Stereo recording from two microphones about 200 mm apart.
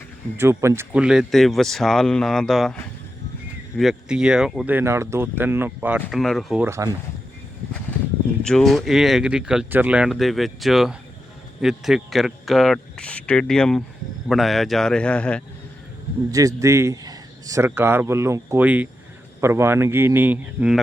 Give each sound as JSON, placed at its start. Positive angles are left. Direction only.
{"t": 0.3, "sound": "speech", "side_deg": -15}
{"t": 3.8, "sound": "speech", "side_deg": 0}
{"t": 6.7, "sound": "speech", "side_deg": -15}
{"t": 8.4, "sound": "speech", "side_deg": 0}
{"t": 16.3, "sound": "a man's voice", "side_deg": -15}